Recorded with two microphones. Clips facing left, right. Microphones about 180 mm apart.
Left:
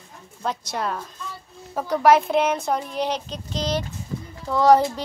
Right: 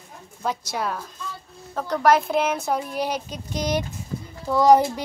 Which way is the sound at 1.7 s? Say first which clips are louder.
Left 2 dB; 5° left (ahead or behind).